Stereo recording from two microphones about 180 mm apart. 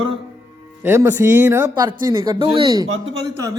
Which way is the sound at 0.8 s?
10° right (ahead or behind).